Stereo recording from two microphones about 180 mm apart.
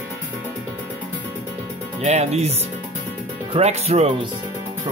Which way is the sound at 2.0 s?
35° right (ahead or behind).